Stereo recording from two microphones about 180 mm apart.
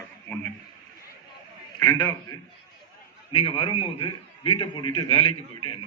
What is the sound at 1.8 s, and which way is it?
A man's voice, 20° left (ahead or behind).